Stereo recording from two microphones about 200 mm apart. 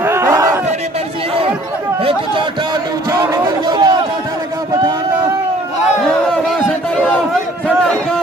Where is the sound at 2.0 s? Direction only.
25° right (ahead or behind).